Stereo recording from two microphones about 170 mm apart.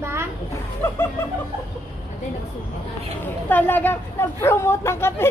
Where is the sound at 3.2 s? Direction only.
10° left (ahead or behind).